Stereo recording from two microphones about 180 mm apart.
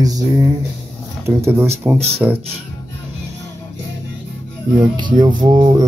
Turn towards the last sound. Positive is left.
turn(degrees=-20)  # may be behind; listen again after turning